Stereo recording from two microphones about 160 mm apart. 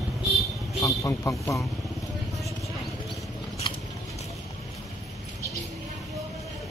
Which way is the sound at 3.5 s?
35° left (ahead or behind).